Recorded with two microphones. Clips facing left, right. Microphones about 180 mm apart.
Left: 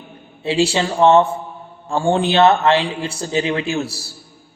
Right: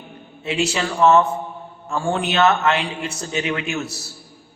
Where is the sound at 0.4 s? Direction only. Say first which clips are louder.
Left 5 dB; 30° left (ahead or behind).